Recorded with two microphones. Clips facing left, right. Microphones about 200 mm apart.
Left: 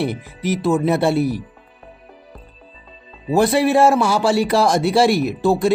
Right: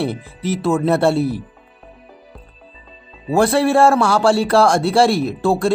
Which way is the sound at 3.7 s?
20° left (ahead or behind).